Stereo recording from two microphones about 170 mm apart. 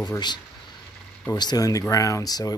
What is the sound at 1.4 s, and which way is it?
Speech, 20° left (ahead or behind).